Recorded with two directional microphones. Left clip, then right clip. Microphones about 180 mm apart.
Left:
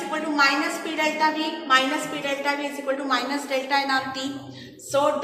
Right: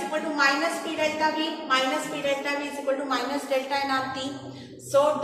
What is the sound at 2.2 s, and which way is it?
A woman's voice, 35° left (ahead or behind).